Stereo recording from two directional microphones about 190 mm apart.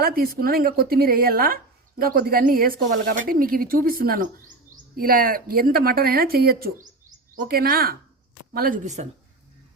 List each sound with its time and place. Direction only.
0.0 s speech: 50° right (ahead or behind)